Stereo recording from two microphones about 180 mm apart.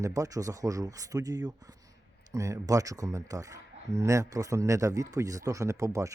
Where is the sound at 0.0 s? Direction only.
20° right (ahead or behind).